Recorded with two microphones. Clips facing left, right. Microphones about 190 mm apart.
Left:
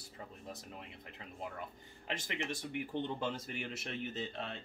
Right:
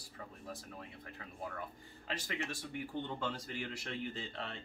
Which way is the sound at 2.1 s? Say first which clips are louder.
Left 1 dB; 20° left (ahead or behind).